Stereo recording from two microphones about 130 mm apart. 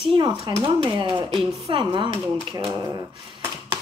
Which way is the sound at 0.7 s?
40° right (ahead or behind).